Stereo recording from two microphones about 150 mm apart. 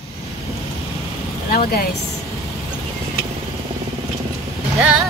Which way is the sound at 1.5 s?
90° left.